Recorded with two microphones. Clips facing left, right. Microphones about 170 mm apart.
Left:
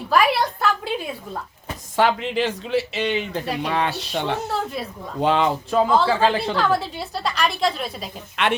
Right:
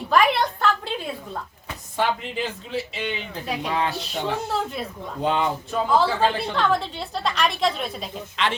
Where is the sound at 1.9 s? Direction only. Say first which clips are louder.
Left 5 dB; 90° left; by 3.9 s 65° left (ahead or behind).